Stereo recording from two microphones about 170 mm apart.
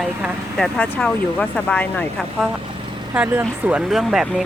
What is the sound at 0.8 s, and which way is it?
Speech, 5° left (ahead or behind).